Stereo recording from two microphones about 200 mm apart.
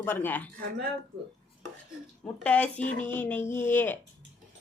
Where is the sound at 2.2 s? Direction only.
5° left (ahead or behind).